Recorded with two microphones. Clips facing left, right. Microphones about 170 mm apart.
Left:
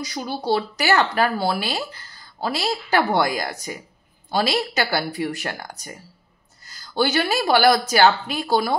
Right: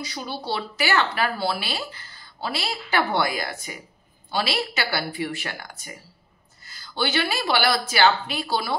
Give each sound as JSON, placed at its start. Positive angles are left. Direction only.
{"t": 0.0, "sound": "speech", "side_deg": 40}